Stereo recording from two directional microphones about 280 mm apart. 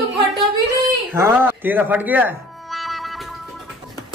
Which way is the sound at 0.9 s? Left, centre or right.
Centre.